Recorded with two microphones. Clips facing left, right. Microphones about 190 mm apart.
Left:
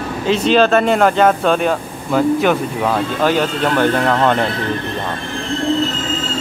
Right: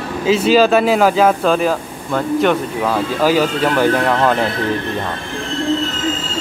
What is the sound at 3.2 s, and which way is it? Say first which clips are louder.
Speech: right 3 dB; 5° right (ahead or behind).